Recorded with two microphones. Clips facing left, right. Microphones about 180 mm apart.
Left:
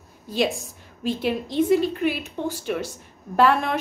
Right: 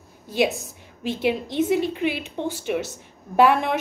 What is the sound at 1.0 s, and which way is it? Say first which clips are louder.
Speech: right 1 dB; 70° right (ahead or behind).